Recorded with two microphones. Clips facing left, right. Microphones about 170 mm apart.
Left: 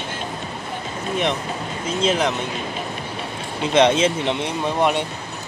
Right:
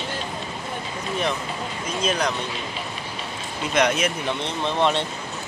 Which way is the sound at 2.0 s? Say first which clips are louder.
Left 4 dB; 20° left (ahead or behind).